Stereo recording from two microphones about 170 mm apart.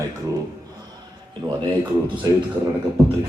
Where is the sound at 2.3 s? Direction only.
20° right (ahead or behind).